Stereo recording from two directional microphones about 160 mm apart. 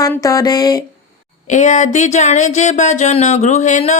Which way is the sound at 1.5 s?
50° left (ahead or behind).